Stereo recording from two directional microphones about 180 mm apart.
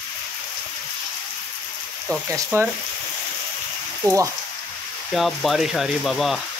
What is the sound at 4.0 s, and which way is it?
Speech, 15° right (ahead or behind).